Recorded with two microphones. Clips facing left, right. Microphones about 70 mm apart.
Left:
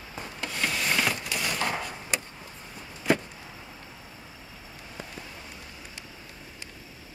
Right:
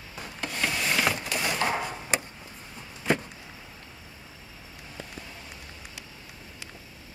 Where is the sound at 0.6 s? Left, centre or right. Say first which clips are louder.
Even; centre.